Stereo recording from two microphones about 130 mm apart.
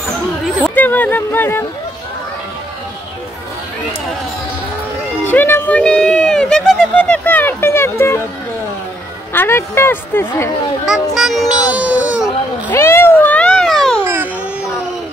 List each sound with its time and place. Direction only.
0.7 s speech: 15° left (ahead or behind)
5.2 s a sound: 15° left (ahead or behind)
9.3 s speech: 20° left (ahead or behind)
10.9 s a sound: centre (ahead or behind)
12.7 s cat: 20° left (ahead or behind)
14.0 s music: 15° right (ahead or behind)